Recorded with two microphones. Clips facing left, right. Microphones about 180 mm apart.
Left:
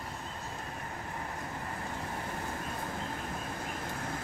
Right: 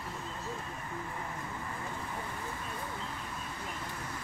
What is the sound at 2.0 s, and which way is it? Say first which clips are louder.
Vehicle: left 2 dB; 50° left (ahead or behind).